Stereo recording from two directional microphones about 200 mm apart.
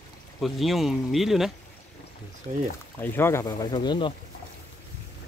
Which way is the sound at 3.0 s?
10° left (ahead or behind).